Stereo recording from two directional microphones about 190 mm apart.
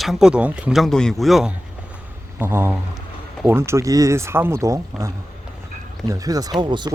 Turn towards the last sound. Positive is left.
turn(degrees=-25)  # may be behind; listen again after turning